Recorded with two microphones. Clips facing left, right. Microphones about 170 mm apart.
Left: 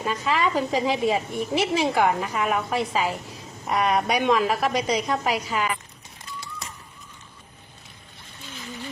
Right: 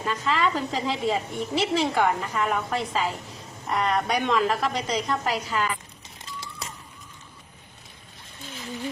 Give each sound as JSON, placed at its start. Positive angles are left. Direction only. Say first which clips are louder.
{"t": 0.0, "sound": "a woman's voice", "louder": "left 1 dB", "side_deg": 15}